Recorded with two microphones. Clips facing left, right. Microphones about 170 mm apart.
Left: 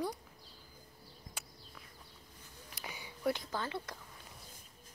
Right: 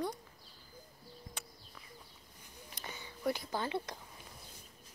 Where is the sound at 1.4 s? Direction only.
5° left (ahead or behind).